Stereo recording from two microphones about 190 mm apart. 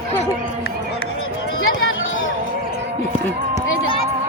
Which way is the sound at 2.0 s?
90° left.